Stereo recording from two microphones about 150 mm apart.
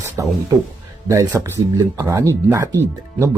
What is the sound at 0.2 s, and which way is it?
Speech, 20° right (ahead or behind).